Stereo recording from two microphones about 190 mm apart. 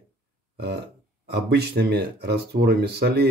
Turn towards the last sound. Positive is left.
turn(degrees=-60)  # may be behind; listen again after turning